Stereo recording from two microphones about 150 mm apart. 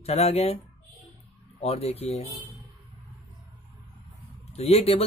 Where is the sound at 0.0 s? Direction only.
45° left (ahead or behind).